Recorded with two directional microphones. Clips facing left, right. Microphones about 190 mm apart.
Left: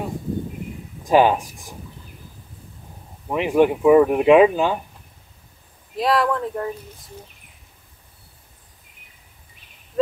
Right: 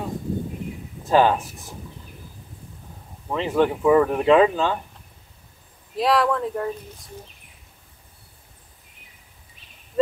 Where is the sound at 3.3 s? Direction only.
15° left (ahead or behind).